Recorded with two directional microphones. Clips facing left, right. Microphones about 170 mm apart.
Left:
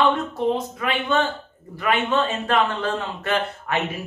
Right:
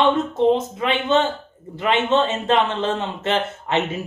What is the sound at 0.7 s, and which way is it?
Speech, 25° right (ahead or behind).